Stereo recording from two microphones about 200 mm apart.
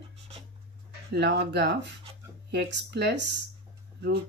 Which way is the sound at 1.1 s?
60° right (ahead or behind).